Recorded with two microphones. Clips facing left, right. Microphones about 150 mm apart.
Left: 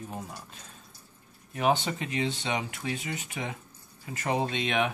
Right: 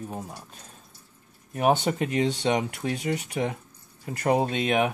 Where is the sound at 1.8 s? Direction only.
45° right (ahead or behind).